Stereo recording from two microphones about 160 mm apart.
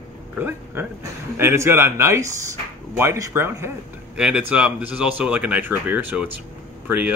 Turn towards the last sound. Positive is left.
turn(degrees=-10)  # may be behind; listen again after turning